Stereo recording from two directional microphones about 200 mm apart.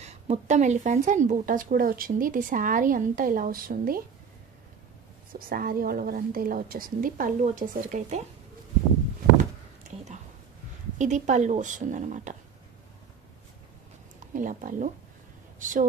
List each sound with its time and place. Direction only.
0.0 s speech: 35° right (ahead or behind)
5.3 s speech: 45° right (ahead or behind)
11.0 s a woman's voice: 35° right (ahead or behind)
14.3 s a woman's voice: 40° right (ahead or behind)